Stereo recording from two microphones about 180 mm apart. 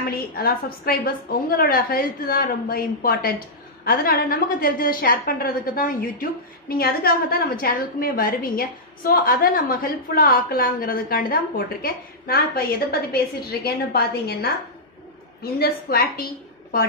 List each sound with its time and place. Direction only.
0.1 s a woman's voice: 55° left (ahead or behind)
15.6 s a woman's voice: 55° left (ahead or behind)